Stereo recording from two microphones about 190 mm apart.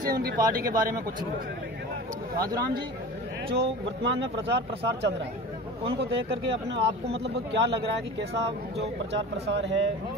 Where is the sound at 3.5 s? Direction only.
65° right (ahead or behind).